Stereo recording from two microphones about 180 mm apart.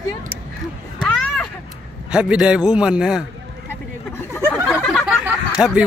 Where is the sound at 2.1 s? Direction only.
5° right (ahead or behind).